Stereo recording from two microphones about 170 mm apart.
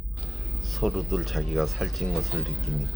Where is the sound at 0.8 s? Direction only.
Centre (ahead or behind).